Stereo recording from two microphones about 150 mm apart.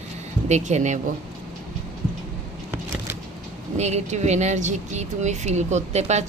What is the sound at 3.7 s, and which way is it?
Speech, 50° right (ahead or behind).